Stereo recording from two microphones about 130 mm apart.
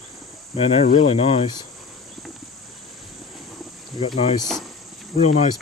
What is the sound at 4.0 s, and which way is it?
Speech, 40° left (ahead or behind).